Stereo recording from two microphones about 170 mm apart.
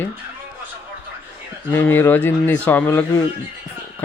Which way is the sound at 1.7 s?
15° left (ahead or behind).